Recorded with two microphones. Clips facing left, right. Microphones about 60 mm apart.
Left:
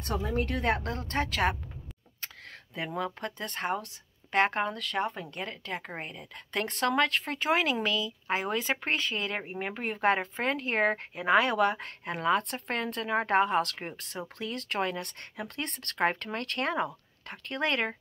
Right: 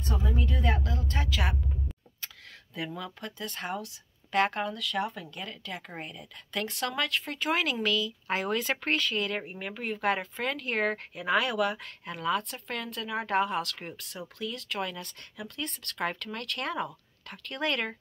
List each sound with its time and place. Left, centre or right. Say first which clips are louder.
0.0 s a woman's voice: left 2 dB; left
2.2 s speech: left 2 dB; left
9.6 s speech: left 2 dB; left